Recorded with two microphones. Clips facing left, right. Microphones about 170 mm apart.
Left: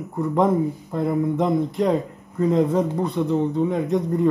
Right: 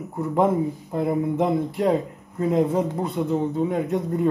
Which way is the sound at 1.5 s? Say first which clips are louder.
Left 1 dB; 10° right (ahead or behind).